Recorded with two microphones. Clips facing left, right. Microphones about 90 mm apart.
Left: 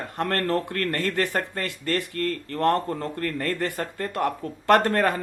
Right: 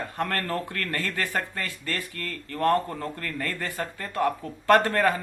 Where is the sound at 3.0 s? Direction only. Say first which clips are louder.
Left 4 dB; 35° left (ahead or behind).